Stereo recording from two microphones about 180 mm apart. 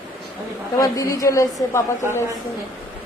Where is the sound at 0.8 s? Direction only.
20° left (ahead or behind).